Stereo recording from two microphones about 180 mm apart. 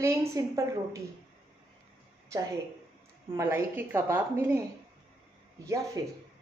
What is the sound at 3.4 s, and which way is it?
A woman's voice, 15° right (ahead or behind).